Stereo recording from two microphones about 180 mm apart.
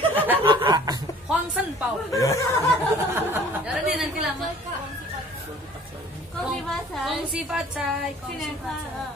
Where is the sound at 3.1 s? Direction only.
15° right (ahead or behind).